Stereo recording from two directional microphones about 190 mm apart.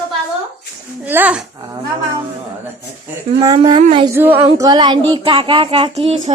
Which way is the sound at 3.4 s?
25° right (ahead or behind).